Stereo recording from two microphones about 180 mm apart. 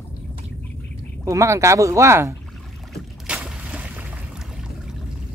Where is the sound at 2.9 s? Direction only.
5° right (ahead or behind).